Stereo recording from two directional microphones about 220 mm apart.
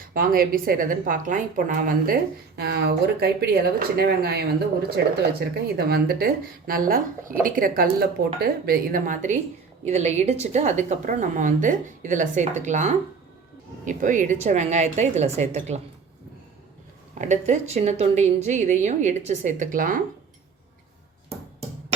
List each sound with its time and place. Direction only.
0.0 s a woman's voice: 40° right (ahead or behind)
17.2 s a woman's voice: 35° right (ahead or behind)